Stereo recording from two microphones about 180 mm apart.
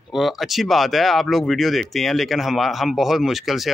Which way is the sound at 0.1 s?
Centre (ahead or behind).